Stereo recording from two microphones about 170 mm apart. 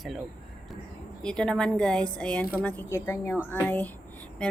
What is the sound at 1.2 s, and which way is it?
Speech, 5° left (ahead or behind).